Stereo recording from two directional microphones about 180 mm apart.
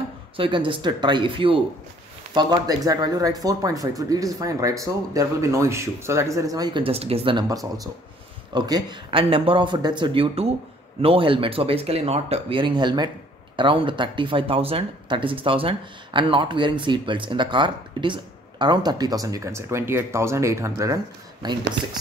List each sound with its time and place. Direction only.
0.4 s speech: 25° right (ahead or behind)